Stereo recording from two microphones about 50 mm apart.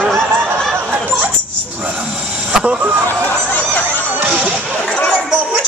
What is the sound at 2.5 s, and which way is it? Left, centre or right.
Speech, centre.